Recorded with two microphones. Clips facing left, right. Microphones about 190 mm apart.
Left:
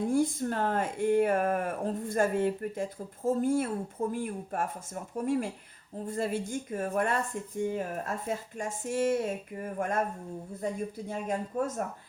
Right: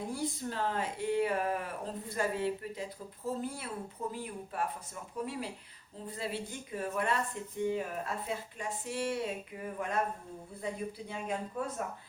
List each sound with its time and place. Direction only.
0.1 s speech: 50° left (ahead or behind)